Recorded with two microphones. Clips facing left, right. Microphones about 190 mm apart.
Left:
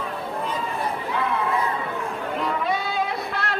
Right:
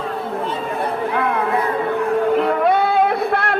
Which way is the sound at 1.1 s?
55° right (ahead or behind).